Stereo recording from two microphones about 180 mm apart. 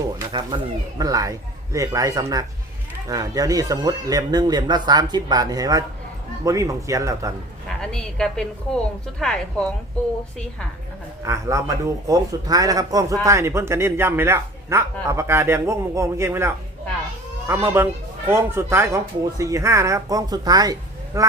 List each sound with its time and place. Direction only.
0.3 s a man's voice: 25° right (ahead or behind)
7.8 s a woman's voice: 5° left (ahead or behind)
11.2 s a man's voice: 15° right (ahead or behind)